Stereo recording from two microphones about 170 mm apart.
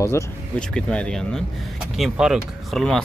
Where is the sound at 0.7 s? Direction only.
5° left (ahead or behind).